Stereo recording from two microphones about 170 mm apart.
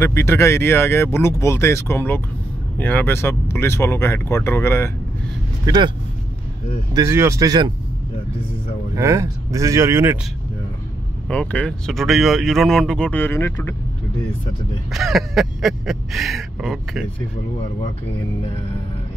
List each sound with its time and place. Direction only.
0.0 s speech: 15° left (ahead or behind)
6.9 s speech: 15° right (ahead or behind)
8.9 s speech: 15° right (ahead or behind)
11.2 s speech: 5° left (ahead or behind)
14.9 s speech: centre (ahead or behind)